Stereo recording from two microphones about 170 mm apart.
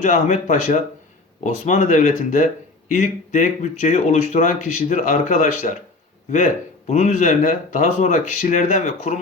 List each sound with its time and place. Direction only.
0.0 s speech: 45° left (ahead or behind)